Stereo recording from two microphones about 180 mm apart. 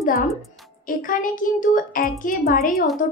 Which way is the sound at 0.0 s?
55° left (ahead or behind).